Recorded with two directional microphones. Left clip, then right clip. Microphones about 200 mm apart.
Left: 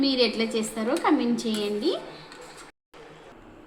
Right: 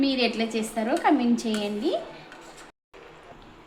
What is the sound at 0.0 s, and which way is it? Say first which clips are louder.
Speech: left 1 dB; 20° right (ahead or behind).